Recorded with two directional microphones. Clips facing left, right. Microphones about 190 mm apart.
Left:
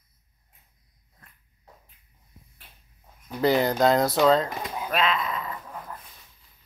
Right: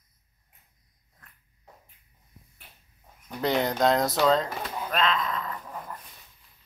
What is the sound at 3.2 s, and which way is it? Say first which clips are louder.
Speech: left 4 dB; centre (ahead or behind).